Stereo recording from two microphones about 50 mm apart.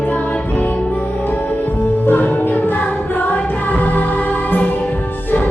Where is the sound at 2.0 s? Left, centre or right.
Left.